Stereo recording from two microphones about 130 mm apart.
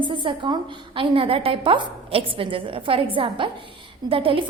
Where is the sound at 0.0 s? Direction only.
40° right (ahead or behind).